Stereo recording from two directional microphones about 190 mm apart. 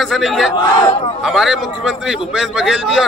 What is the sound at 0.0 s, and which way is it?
A man's voice, centre (ahead or behind).